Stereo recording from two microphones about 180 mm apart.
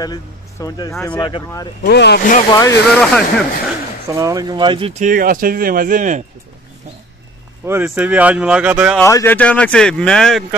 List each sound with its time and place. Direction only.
0.0 s speech: 20° left (ahead or behind)
1.8 s speech: 65° left (ahead or behind)
2.5 s speech: 20° left (ahead or behind)
3.0 s speech: 5° left (ahead or behind)
4.1 s speech: 20° right (ahead or behind)
5.0 s speech: 50° right (ahead or behind)
7.6 s speech: 10° right (ahead or behind)
9.0 s speech: 15° left (ahead or behind)